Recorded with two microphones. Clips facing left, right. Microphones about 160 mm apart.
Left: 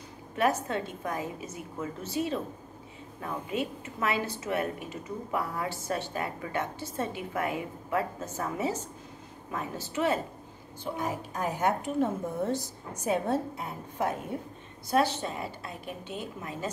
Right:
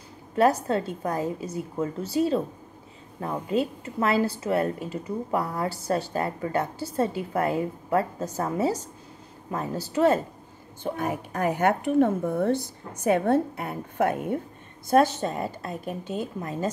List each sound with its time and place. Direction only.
0.4 s a woman's voice: 35° right (ahead or behind)
10.8 s a woman's voice: 60° right (ahead or behind)
14.9 s a woman's voice: 45° right (ahead or behind)